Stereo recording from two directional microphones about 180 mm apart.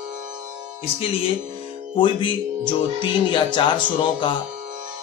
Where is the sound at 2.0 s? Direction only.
25° left (ahead or behind).